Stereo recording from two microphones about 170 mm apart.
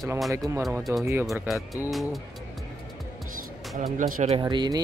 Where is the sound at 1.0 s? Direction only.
15° right (ahead or behind).